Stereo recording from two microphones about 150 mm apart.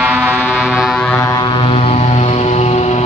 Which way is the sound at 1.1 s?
20° left (ahead or behind).